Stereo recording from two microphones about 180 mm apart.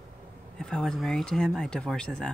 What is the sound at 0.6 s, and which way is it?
Speech, centre (ahead or behind).